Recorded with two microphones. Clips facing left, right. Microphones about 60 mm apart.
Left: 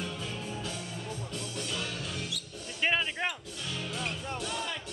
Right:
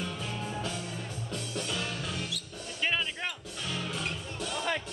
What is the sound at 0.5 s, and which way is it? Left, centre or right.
Music, right.